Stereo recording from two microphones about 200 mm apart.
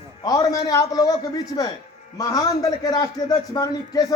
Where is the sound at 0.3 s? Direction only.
20° left (ahead or behind).